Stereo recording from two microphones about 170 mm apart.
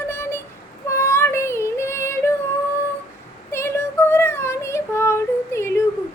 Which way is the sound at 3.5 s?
15° left (ahead or behind).